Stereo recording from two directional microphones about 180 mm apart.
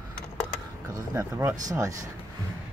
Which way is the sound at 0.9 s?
15° right (ahead or behind).